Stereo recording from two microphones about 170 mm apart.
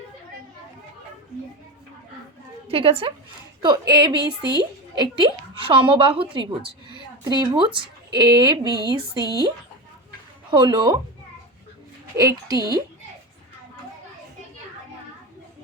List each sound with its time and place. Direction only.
2.6 s a woman's voice: 35° right (ahead or behind)
10.5 s a woman's voice: 30° right (ahead or behind)
12.1 s a woman's voice: 20° right (ahead or behind)